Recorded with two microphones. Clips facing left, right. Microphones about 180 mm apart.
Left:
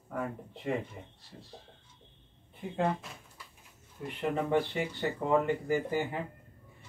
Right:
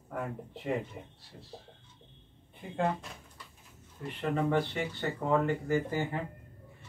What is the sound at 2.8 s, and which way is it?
Speech, 5° left (ahead or behind).